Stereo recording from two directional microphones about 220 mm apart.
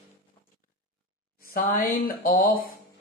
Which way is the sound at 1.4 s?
40° left (ahead or behind).